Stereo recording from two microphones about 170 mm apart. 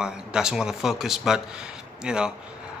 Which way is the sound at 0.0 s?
5° right (ahead or behind).